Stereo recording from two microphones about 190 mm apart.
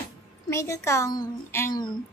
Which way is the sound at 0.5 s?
15° left (ahead or behind).